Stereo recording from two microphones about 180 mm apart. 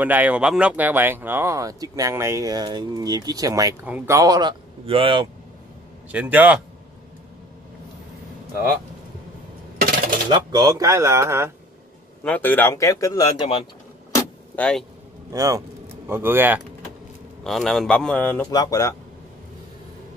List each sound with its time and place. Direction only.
0.0 s speech: 10° right (ahead or behind); by 5.3 s 30° right (ahead or behind)
6.1 s speech: 10° right (ahead or behind)
10.3 s speech: 25° right (ahead or behind)
12.2 s speech: 10° left (ahead or behind)
14.1 s vehicle: 10° left (ahead or behind)
15.3 s speech: 20° right (ahead or behind)
17.4 s a man's voice: centre (ahead or behind)
18.5 s speech: 20° left (ahead or behind)